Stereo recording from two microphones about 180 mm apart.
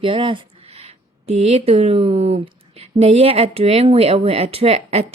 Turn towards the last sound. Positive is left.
turn(degrees=-35)  # may be behind; listen again after turning